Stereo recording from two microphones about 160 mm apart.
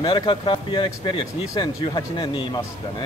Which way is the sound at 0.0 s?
35° left (ahead or behind).